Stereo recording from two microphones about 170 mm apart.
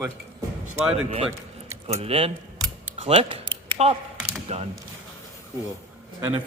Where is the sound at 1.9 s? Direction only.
35° right (ahead or behind).